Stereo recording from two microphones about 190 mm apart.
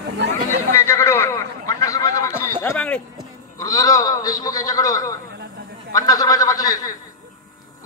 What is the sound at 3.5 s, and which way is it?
A man's voice, 20° left (ahead or behind).